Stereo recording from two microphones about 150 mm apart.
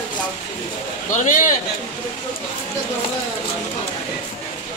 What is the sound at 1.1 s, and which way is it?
Speech, 60° left (ahead or behind).